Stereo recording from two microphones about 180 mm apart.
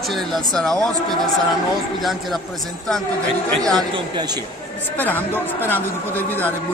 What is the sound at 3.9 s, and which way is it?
Speech, 25° right (ahead or behind).